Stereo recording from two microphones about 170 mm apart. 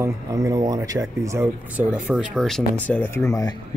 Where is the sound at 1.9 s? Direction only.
5° right (ahead or behind); by 3.5 s 15° left (ahead or behind).